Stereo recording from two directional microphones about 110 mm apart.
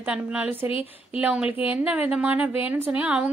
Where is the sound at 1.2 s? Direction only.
10° right (ahead or behind).